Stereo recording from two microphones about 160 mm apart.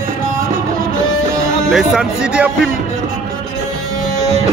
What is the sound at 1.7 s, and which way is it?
Speech, 5° right (ahead or behind).